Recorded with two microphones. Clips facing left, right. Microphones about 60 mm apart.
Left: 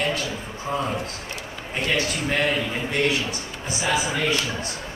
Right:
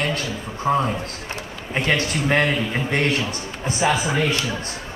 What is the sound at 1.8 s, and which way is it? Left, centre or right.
Speech, right.